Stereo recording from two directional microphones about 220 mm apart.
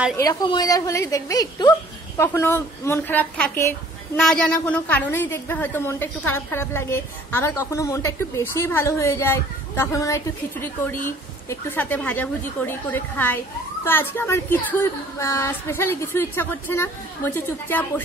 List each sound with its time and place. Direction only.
0.2 s a woman's voice: 15° left (ahead or behind)